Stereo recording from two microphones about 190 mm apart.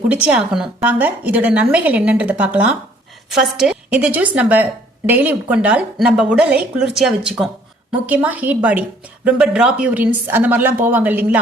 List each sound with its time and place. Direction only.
0.1 s a woman's voice: 5° right (ahead or behind)